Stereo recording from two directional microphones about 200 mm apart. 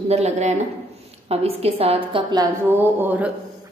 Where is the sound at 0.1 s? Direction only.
35° right (ahead or behind).